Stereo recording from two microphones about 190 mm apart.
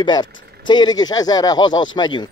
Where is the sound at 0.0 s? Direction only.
25° left (ahead or behind).